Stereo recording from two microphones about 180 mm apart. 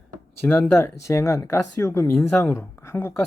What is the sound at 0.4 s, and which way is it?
Speech, 10° left (ahead or behind).